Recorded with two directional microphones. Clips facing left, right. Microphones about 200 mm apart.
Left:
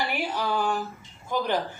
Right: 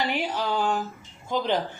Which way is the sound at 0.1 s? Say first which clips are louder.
Right 1 dB; 20° right (ahead or behind).